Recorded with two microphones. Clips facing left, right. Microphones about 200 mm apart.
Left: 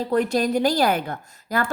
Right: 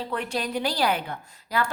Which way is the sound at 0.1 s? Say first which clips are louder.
Left 10 dB; 40° left (ahead or behind).